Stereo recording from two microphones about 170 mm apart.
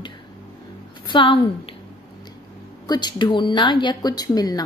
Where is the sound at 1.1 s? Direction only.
30° left (ahead or behind).